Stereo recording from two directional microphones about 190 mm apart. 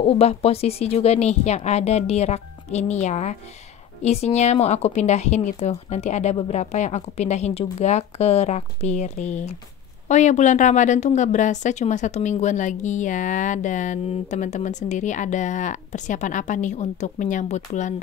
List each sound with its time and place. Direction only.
0.0 s a woman's voice: 30° left (ahead or behind)